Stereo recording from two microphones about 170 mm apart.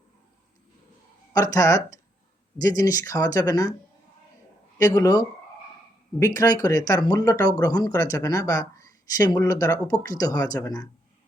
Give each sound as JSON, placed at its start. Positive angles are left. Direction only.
{"t": 1.3, "sound": "speech", "side_deg": 20}
{"t": 4.8, "sound": "speech", "side_deg": 20}